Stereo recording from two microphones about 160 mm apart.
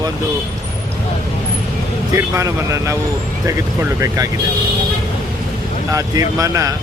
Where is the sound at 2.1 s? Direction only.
20° right (ahead or behind).